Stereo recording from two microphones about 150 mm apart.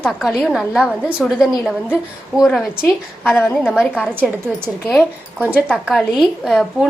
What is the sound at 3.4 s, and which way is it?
Speech, 10° left (ahead or behind).